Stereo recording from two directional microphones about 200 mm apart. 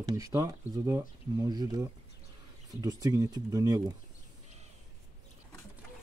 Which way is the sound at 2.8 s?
15° right (ahead or behind).